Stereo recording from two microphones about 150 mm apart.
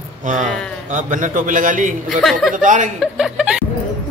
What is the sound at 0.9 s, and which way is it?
A man's voice, 60° right (ahead or behind).